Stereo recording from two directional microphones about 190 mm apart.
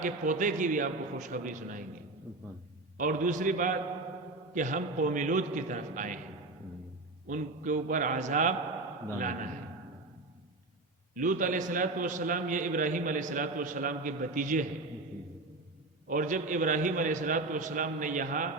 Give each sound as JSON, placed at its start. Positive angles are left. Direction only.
{"t": 0.0, "sound": "a man's voice", "side_deg": -45}
{"t": 3.0, "sound": "a man's voice", "side_deg": -45}
{"t": 7.3, "sound": "a man's voice", "side_deg": -40}
{"t": 11.1, "sound": "a man's voice", "side_deg": -45}
{"t": 16.0, "sound": "a man's voice", "side_deg": -45}